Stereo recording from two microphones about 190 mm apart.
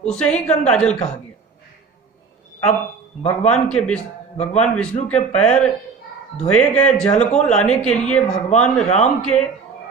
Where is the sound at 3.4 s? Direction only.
5° left (ahead or behind).